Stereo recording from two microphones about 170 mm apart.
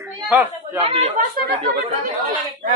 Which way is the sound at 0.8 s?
40° right (ahead or behind).